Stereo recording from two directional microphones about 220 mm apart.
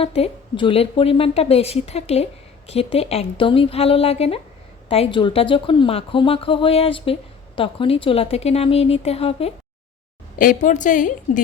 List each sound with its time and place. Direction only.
0.0 s a woman's voice: 25° left (ahead or behind)
10.3 s a woman's voice: 35° left (ahead or behind)